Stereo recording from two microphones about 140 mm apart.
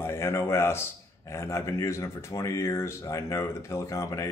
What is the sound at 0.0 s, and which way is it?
A man's voice, 20° left (ahead or behind).